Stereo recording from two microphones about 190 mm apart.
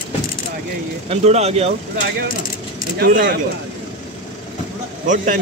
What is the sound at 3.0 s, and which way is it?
Speech, 45° right (ahead or behind).